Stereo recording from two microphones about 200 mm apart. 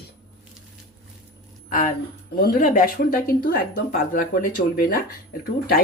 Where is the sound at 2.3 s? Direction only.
45° left (ahead or behind).